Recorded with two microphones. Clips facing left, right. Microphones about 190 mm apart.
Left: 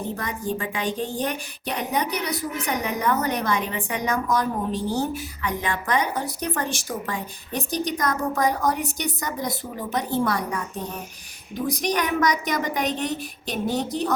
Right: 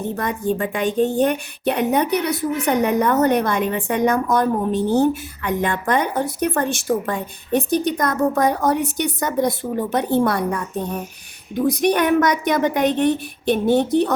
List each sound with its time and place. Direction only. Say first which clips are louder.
0.2 s a woman's voice: right 7 dB; 55° right (ahead or behind)
11.8 s a woman's voice: right 6 dB; 55° right (ahead or behind)